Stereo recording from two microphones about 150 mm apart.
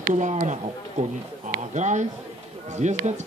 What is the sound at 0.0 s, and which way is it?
Speech, 55° right (ahead or behind).